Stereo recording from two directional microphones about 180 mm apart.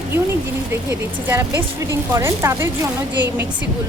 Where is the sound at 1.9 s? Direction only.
15° right (ahead or behind).